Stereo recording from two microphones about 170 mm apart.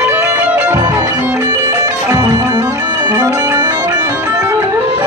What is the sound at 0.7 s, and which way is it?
Music, 20° right (ahead or behind).